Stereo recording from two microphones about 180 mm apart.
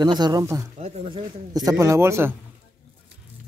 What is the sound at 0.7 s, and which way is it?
A man's voice, 35° right (ahead or behind).